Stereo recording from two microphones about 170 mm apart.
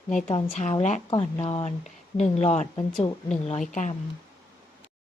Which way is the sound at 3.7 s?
45° left (ahead or behind).